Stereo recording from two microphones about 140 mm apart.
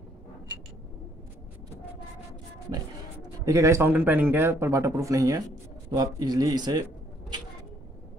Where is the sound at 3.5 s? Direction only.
20° right (ahead or behind).